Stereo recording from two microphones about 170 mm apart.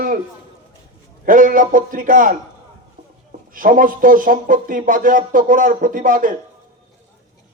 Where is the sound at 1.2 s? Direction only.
55° right (ahead or behind).